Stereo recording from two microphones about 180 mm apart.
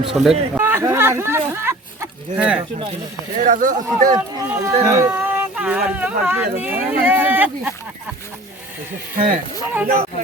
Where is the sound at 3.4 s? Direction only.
45° right (ahead or behind).